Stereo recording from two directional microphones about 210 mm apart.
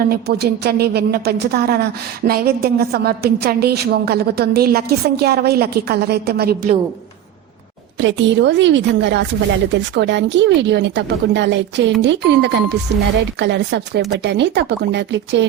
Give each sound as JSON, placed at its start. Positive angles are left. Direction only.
{"t": 0.1, "sound": "a woman's voice", "side_deg": -50}
{"t": 7.9, "sound": "speech", "side_deg": -60}